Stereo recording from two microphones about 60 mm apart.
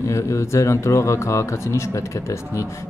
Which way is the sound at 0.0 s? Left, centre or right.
Left.